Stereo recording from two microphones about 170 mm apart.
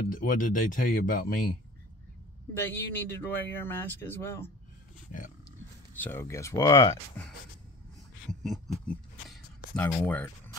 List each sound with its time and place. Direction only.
0.2 s speech: 55° left (ahead or behind)
2.5 s speech: 10° left (ahead or behind)
5.9 s speech: 10° left (ahead or behind)
8.3 s a sound: centre (ahead or behind)